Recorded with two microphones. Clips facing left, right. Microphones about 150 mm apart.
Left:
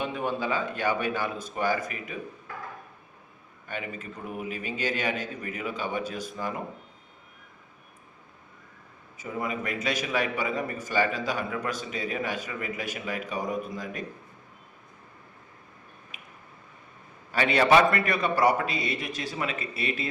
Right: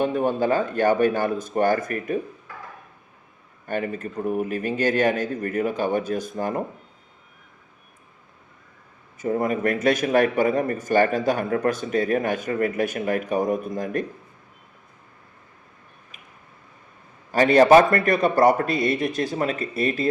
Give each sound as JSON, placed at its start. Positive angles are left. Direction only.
{"t": 0.0, "sound": "a man's voice", "side_deg": -45}
{"t": 3.7, "sound": "a man's voice", "side_deg": -45}
{"t": 9.2, "sound": "a man's voice", "side_deg": -50}
{"t": 17.3, "sound": "a man's voice", "side_deg": -40}